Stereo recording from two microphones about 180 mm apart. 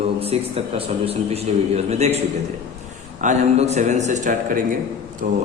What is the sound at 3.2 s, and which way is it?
A man's voice, 40° right (ahead or behind).